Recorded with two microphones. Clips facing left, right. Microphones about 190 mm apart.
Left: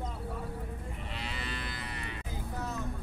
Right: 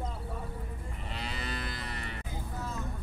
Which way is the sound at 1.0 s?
40° right (ahead or behind).